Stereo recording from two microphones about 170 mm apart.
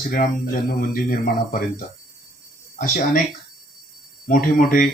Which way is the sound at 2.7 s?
50° left (ahead or behind).